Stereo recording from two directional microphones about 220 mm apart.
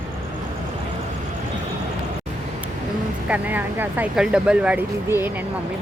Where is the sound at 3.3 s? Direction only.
10° right (ahead or behind).